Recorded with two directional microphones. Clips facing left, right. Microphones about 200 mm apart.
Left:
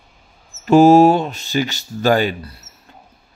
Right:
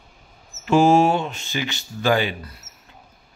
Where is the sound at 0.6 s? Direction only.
40° left (ahead or behind).